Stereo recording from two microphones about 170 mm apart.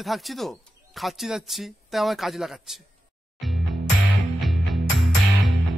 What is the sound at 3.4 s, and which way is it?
Music, centre (ahead or behind).